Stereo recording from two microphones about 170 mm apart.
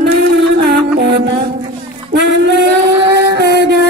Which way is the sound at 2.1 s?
85° right.